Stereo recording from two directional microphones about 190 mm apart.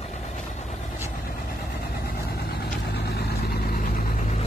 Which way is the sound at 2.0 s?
55° left (ahead or behind).